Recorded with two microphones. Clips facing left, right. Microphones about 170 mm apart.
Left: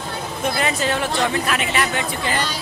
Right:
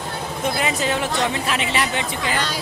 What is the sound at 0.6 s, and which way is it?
Speech, 10° right (ahead or behind).